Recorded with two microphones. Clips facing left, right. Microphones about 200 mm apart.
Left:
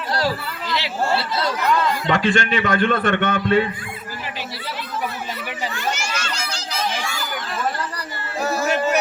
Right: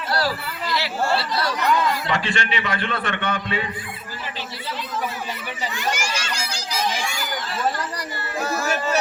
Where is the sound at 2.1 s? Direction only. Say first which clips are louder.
Left 5 dB; 50° left (ahead or behind).